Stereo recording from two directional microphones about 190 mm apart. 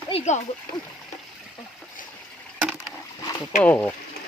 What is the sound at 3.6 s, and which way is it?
Speech, 5° left (ahead or behind).